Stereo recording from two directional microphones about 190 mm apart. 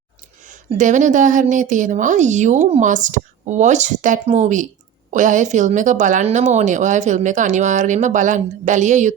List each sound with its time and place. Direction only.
0.4 s a woman's voice: 40° right (ahead or behind)